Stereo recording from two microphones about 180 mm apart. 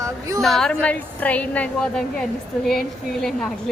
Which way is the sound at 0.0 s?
15° right (ahead or behind).